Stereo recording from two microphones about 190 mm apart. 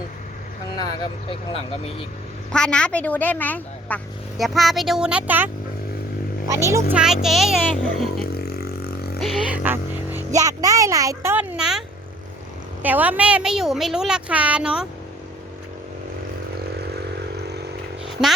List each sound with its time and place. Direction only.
1.3 s speech: 30° left (ahead or behind)
2.5 s speech: 5° left (ahead or behind)
6.6 s speech: 15° right (ahead or behind)
7.0 s speech: centre (ahead or behind)
8.4 s a sound: 55° left (ahead or behind)
9.2 s speech: 5° right (ahead or behind)
12.8 s speech: 10° right (ahead or behind)
18.1 s a sound: centre (ahead or behind)